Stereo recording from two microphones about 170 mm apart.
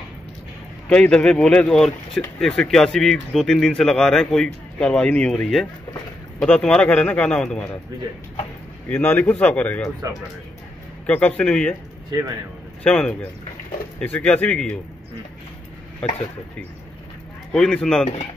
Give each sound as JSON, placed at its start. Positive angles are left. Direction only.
{"t": 0.8, "sound": "speech", "side_deg": 5}
{"t": 8.8, "sound": "speech", "side_deg": 10}
{"t": 11.1, "sound": "speech", "side_deg": 10}
{"t": 12.1, "sound": "speech", "side_deg": -20}
{"t": 12.8, "sound": "speech", "side_deg": 5}
{"t": 16.0, "sound": "speech", "side_deg": 5}
{"t": 17.5, "sound": "speech", "side_deg": 5}